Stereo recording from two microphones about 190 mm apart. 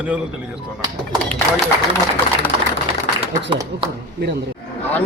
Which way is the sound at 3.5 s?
25° right (ahead or behind).